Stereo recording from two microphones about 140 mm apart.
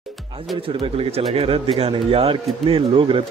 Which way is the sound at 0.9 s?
45° right (ahead or behind).